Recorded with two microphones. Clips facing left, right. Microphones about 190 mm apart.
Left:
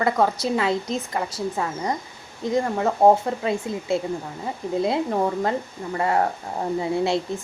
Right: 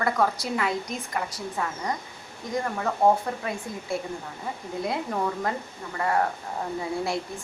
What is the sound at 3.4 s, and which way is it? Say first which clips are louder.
A woman's voice: left 7 dB; 25° left (ahead or behind).